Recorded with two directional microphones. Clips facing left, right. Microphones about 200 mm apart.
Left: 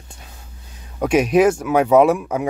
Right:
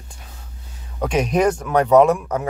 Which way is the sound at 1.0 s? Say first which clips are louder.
Left 4 dB; 10° left (ahead or behind).